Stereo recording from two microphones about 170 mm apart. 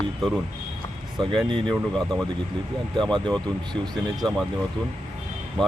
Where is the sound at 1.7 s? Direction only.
Centre (ahead or behind).